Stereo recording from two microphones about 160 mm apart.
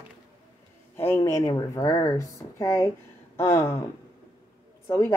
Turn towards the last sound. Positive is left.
turn(degrees=15)  # may be behind; listen again after turning